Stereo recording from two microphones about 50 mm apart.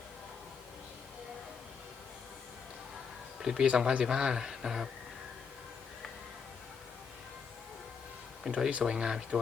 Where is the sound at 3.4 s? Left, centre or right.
Centre.